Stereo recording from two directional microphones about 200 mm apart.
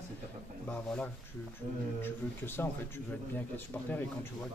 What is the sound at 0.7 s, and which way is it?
Speech, 5° left (ahead or behind).